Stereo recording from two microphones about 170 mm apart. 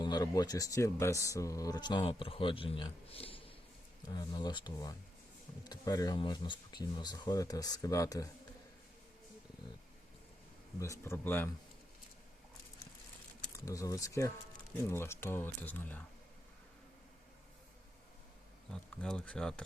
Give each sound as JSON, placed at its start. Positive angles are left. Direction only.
{"t": 0.0, "sound": "speech", "side_deg": 25}
{"t": 10.8, "sound": "speech", "side_deg": 15}
{"t": 13.7, "sound": "speech", "side_deg": 20}
{"t": 18.7, "sound": "speech", "side_deg": 5}